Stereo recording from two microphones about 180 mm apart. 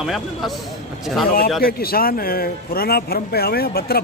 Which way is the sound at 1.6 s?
55° left (ahead or behind).